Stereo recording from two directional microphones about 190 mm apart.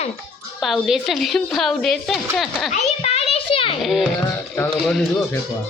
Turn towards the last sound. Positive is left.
turn(degrees=5)  # may be behind; listen again after turning